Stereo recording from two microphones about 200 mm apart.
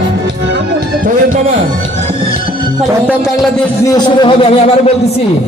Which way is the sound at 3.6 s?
20° left (ahead or behind).